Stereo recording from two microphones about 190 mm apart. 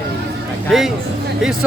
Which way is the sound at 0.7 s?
Centre (ahead or behind).